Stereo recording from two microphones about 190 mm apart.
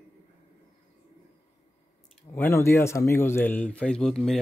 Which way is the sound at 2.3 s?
10° left (ahead or behind).